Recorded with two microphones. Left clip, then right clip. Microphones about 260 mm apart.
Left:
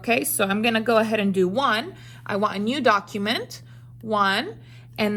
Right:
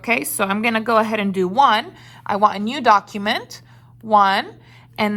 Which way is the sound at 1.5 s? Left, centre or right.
Right.